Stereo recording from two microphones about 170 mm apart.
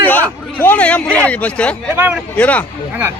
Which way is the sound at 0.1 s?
10° left (ahead or behind).